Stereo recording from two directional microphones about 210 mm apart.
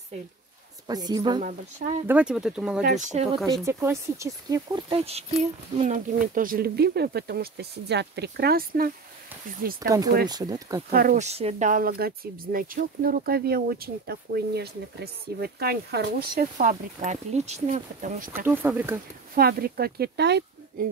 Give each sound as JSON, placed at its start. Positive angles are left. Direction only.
{"t": 0.8, "sound": "a woman's voice", "side_deg": -20}
{"t": 1.8, "sound": "speech", "side_deg": -35}
{"t": 2.0, "sound": "speech", "side_deg": -5}
{"t": 2.8, "sound": "speech", "side_deg": -35}
{"t": 3.3, "sound": "speech", "side_deg": 0}
{"t": 3.6, "sound": "speech", "side_deg": -15}
{"t": 9.8, "sound": "speech", "side_deg": -15}
{"t": 10.9, "sound": "speech", "side_deg": -40}
{"t": 18.5, "sound": "speech", "side_deg": -10}
{"t": 19.3, "sound": "speech", "side_deg": -45}